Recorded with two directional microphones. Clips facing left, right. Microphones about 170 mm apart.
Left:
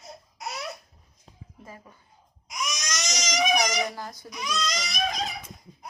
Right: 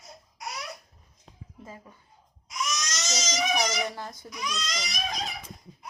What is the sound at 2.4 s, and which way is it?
Baby cry, 15° left (ahead or behind).